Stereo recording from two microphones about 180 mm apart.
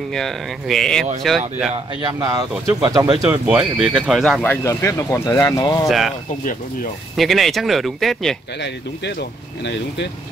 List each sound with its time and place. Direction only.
0.1 s speech: centre (ahead or behind)
1.7 s speech: 25° right (ahead or behind); by 5.9 s 20° left (ahead or behind)
5.9 s speech: centre (ahead or behind)
7.2 s speech: centre (ahead or behind)
8.5 s speech: 75° left (ahead or behind)